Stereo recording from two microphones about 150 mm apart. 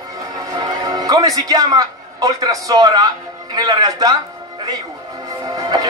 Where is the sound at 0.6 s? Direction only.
25° right (ahead or behind).